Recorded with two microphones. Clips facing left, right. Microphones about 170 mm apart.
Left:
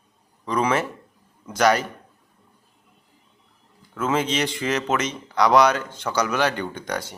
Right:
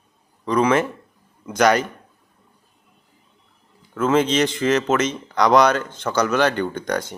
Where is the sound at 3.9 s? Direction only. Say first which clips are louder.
Right 5 dB; 10° left (ahead or behind).